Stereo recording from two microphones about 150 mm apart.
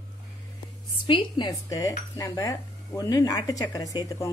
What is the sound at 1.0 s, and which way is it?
Speech, 35° left (ahead or behind).